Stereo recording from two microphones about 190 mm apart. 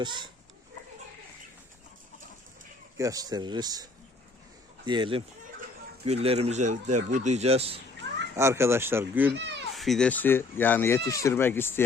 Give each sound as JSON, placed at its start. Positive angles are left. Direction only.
{"t": 0.0, "sound": "speech", "side_deg": -25}
{"t": 3.0, "sound": "speech", "side_deg": -20}
{"t": 4.9, "sound": "speech", "side_deg": -25}
{"t": 8.0, "sound": "children playing", "side_deg": -65}
{"t": 8.4, "sound": "speech", "side_deg": -15}
{"t": 9.3, "sound": "a sound", "side_deg": -70}
{"t": 9.7, "sound": "speech", "side_deg": 0}